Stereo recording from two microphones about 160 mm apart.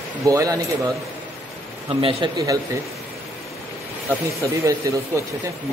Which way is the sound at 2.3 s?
20° right (ahead or behind).